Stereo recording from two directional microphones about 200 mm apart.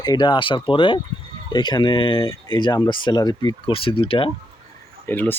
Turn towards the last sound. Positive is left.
turn(degrees=10)  # may be behind; listen again after turning